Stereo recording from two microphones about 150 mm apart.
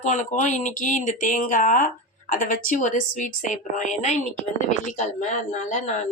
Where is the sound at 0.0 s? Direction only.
55° left (ahead or behind).